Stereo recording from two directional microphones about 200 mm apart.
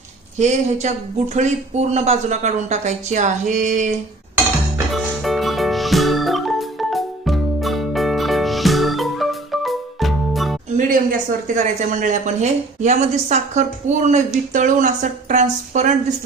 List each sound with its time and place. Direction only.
0.3 s speech: 35° right (ahead or behind)
4.9 s music: centre (ahead or behind)
10.8 s speech: 40° right (ahead or behind)